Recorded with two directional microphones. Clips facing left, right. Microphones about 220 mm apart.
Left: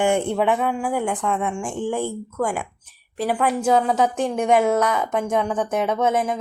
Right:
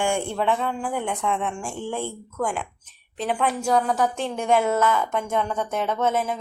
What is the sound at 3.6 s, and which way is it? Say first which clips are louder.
Speech: left 4 dB; 25° left (ahead or behind).